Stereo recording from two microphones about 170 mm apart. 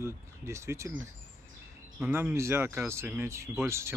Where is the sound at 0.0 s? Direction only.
15° right (ahead or behind).